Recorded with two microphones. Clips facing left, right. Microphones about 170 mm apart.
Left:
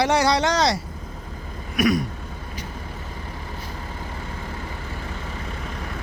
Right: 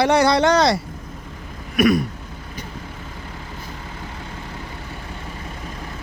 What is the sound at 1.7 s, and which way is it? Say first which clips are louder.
Throat clearing: right 4 dB; 60° right (ahead or behind).